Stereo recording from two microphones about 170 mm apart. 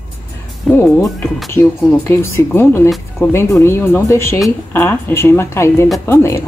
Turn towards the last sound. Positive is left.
turn(degrees=15)  # may be behind; listen again after turning